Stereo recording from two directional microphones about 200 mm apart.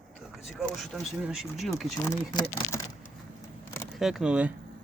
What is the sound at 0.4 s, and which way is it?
Speech, centre (ahead or behind).